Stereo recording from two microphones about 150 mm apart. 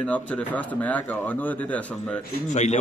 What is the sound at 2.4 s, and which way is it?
Speech, 50° left (ahead or behind).